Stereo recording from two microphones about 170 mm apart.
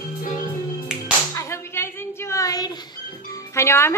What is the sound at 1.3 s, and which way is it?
Clapping, 15° left (ahead or behind).